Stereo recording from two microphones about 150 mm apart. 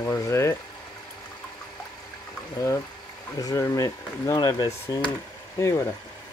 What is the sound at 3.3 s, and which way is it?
Speech, 25° left (ahead or behind).